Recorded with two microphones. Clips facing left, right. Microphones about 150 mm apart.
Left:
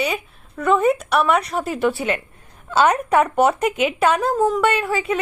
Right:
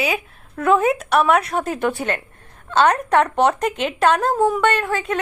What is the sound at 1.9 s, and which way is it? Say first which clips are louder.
Speech: left 1 dB; 40° right (ahead or behind).